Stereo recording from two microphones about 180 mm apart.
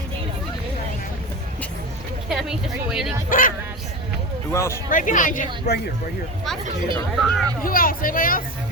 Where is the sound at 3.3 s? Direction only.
50° left (ahead or behind).